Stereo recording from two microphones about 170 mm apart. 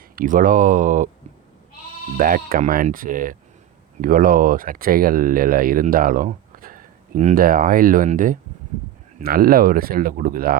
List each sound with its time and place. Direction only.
0.2 s speech: 55° right (ahead or behind)
2.1 s speech: 55° right (ahead or behind)